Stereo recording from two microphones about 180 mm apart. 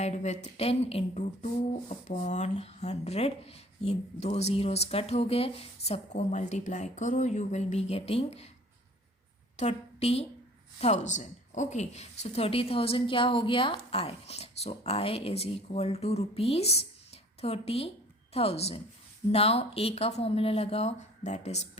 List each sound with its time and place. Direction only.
0.0 s speech: 40° left (ahead or behind)
9.6 s a woman's voice: 35° left (ahead or behind)